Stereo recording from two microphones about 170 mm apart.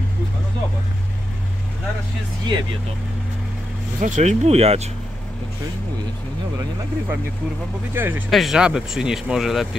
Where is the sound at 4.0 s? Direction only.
45° right (ahead or behind).